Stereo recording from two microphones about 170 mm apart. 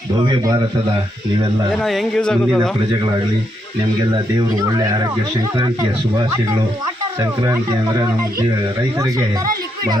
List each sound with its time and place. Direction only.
0.2 s a man's voice: 25° right (ahead or behind)
1.7 s a man's voice: centre (ahead or behind)